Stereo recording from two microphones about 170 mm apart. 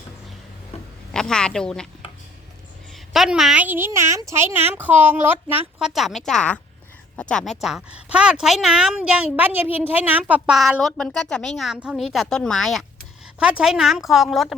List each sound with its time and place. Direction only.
0.7 s a sound: 40° left (ahead or behind)
1.1 s speech: 5° left (ahead or behind)
2.9 s a woman's voice: centre (ahead or behind)
5.9 s speech: centre (ahead or behind)